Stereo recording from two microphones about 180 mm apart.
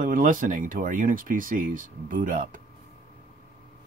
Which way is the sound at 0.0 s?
45° right (ahead or behind).